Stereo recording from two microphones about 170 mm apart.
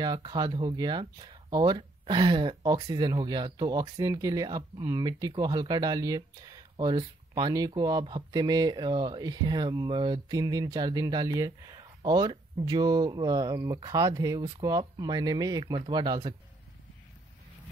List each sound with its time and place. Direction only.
0.0 s speech: 25° right (ahead or behind)